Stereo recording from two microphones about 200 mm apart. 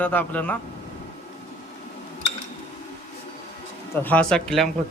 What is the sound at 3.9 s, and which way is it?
Speech, 10° left (ahead or behind).